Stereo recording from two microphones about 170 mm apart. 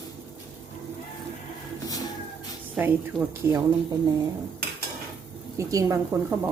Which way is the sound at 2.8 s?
10° right (ahead or behind).